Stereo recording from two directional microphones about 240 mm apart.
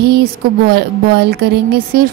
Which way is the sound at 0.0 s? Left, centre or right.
Right.